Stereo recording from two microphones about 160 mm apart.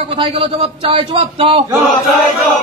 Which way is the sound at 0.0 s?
35° right (ahead or behind).